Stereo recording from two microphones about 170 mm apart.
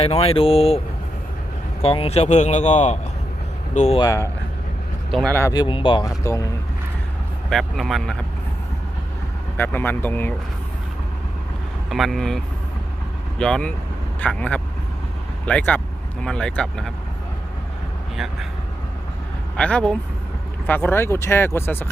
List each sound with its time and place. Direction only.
0.0 s speech: 35° left (ahead or behind)
1.8 s speech: 35° left (ahead or behind)
4.0 s speech: 20° left (ahead or behind)
5.1 s speech: 10° left (ahead or behind)
5.5 s speech: 30° left (ahead or behind)
6.1 s speech: 20° left (ahead or behind)
7.5 s speech: centre (ahead or behind)
9.6 s speech: 10° left (ahead or behind)
11.9 s speech: centre (ahead or behind)
13.4 s speech: 5° left (ahead or behind)
19.5 s speech: 5° left (ahead or behind)